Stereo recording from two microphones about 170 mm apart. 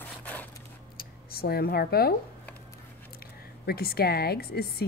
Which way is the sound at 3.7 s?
65° left (ahead or behind).